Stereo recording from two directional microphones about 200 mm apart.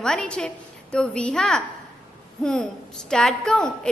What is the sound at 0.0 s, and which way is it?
A woman's voice, 5° left (ahead or behind).